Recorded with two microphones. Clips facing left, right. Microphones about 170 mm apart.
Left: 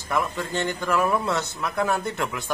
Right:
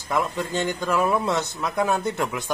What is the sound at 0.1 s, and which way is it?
Speech, 20° right (ahead or behind).